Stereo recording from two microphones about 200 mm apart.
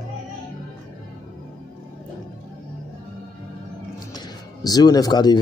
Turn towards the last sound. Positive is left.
turn(degrees=20)  # may be behind; listen again after turning